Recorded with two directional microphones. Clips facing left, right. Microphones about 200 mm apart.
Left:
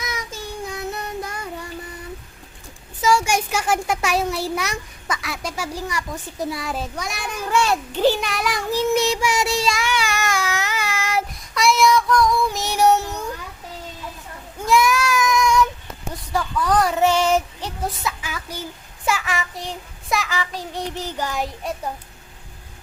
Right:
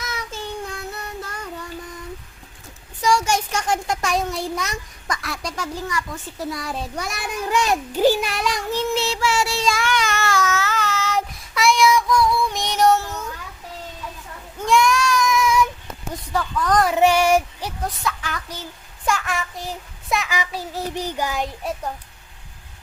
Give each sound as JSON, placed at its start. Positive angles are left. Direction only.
{"t": 0.0, "sound": "child singing", "side_deg": 10}
{"t": 3.0, "sound": "a child's voice", "side_deg": 5}
{"t": 6.6, "sound": "a child's voice", "side_deg": 0}
{"t": 7.5, "sound": "a child's voice", "side_deg": -15}
{"t": 9.0, "sound": "a child's voice", "side_deg": 15}
{"t": 9.6, "sound": "child singing", "side_deg": 5}
{"t": 11.5, "sound": "child singing", "side_deg": 0}
{"t": 11.9, "sound": "female singing", "side_deg": -10}
{"t": 12.5, "sound": "child singing", "side_deg": 5}
{"t": 14.7, "sound": "child singing", "side_deg": 5}
{"t": 16.3, "sound": "a child's voice", "side_deg": 10}
{"t": 17.0, "sound": "child singing", "side_deg": -10}
{"t": 18.0, "sound": "a child's voice", "side_deg": 5}
{"t": 21.3, "sound": "a child's voice", "side_deg": 0}